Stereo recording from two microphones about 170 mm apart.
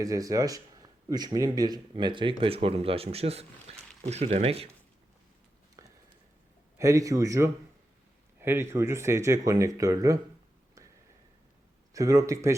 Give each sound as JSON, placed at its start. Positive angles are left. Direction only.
{"t": 0.0, "sound": "speech", "side_deg": -20}
{"t": 3.7, "sound": "a sound", "side_deg": -40}
{"t": 4.0, "sound": "speech", "side_deg": -40}
{"t": 6.7, "sound": "speech", "side_deg": -20}
{"t": 11.9, "sound": "speech", "side_deg": -20}